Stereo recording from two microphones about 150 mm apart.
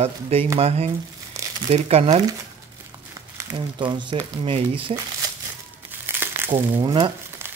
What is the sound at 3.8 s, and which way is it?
Speech, 30° right (ahead or behind).